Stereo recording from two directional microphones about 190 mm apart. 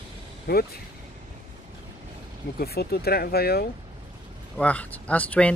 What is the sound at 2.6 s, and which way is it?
Speech, 55° left (ahead or behind).